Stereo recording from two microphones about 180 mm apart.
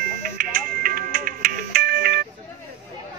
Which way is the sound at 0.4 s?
50° right (ahead or behind).